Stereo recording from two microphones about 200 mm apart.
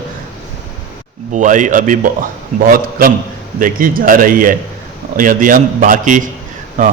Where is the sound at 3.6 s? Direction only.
45° right (ahead or behind).